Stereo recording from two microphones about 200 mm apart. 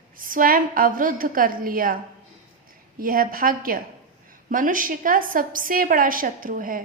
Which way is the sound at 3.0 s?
45° right (ahead or behind).